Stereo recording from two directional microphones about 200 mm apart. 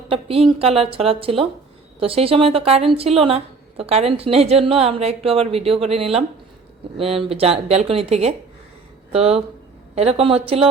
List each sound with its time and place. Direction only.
0.1 s speech: 30° right (ahead or behind)